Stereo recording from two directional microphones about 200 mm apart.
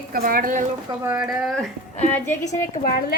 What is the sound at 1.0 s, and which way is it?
Speech, 15° right (ahead or behind).